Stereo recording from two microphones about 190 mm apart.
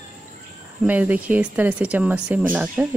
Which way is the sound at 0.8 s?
10° right (ahead or behind).